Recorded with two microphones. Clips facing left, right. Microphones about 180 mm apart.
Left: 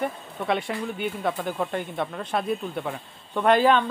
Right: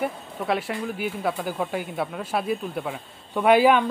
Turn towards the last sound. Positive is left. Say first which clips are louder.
# right 2 dB
turn(degrees=-10)  # may be behind; listen again after turning